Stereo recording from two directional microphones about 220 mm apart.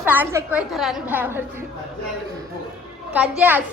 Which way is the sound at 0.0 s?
10° right (ahead or behind).